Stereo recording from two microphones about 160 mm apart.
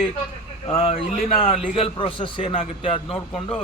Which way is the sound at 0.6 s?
35° left (ahead or behind).